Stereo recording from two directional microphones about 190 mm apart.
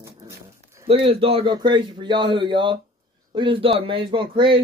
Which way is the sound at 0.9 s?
30° right (ahead or behind).